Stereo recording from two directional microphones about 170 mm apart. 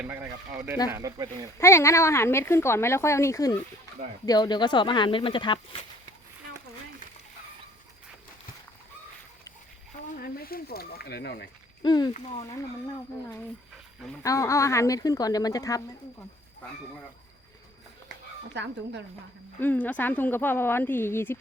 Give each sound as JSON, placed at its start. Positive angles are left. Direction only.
{"t": 0.0, "sound": "speech", "side_deg": -10}
{"t": 1.5, "sound": "speech", "side_deg": 15}
{"t": 10.2, "sound": "speech", "side_deg": 60}
{"t": 11.8, "sound": "speech", "side_deg": 25}
{"t": 12.1, "sound": "speech", "side_deg": 40}
{"t": 14.2, "sound": "speech", "side_deg": 20}
{"t": 18.5, "sound": "speech", "side_deg": -90}
{"t": 19.5, "sound": "speech", "side_deg": 10}